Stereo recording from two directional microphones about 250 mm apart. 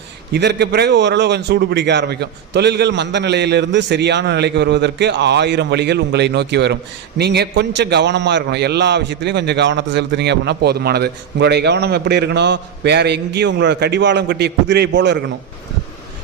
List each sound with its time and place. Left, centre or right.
0.3 s a man's voice: right